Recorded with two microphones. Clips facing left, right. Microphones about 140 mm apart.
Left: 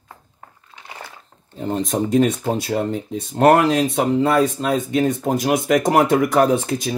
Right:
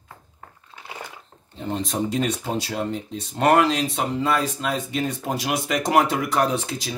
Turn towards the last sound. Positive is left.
turn(degrees=50)  # may be behind; listen again after turning